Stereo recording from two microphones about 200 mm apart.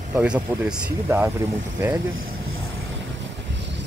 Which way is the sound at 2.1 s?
90° right.